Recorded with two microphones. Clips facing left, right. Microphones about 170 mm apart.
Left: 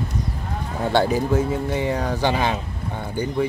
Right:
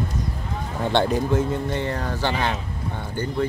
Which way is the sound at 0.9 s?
5° left (ahead or behind).